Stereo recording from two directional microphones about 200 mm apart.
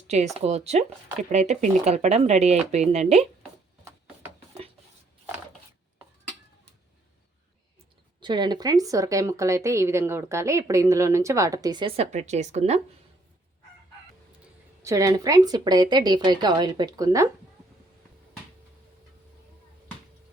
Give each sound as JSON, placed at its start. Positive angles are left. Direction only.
{"t": 0.3, "sound": "speech", "side_deg": -35}
{"t": 8.2, "sound": "a woman's voice", "side_deg": -20}
{"t": 14.8, "sound": "a woman's voice", "side_deg": -15}